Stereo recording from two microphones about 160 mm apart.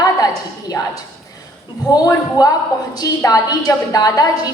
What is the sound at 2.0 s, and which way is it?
A woman's voice, 25° left (ahead or behind).